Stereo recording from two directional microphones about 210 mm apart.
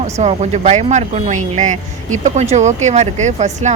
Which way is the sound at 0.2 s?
30° right (ahead or behind).